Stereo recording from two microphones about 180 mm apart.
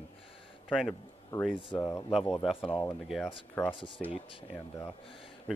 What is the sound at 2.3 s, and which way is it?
A man's voice, centre (ahead or behind).